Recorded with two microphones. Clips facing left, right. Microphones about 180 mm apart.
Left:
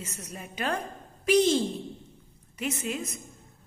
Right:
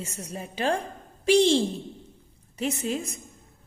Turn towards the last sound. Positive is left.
turn(degrees=-30)  # may be behind; listen again after turning